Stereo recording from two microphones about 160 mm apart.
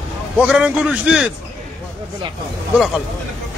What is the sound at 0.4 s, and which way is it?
Speech, 10° right (ahead or behind).